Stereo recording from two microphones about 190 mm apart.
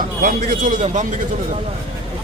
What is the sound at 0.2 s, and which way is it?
Speech, 45° right (ahead or behind).